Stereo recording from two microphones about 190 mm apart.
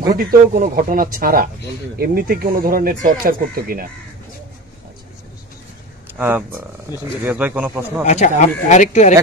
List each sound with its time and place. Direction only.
0.1 s speech: 50° right (ahead or behind)
6.1 s a man's voice: 10° right (ahead or behind)
8.0 s speech: 35° left (ahead or behind)